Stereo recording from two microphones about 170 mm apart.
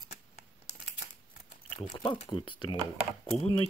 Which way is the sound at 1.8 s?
30° left (ahead or behind).